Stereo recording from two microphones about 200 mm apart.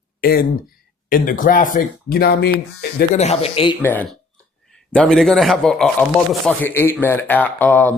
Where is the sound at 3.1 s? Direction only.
30° left (ahead or behind).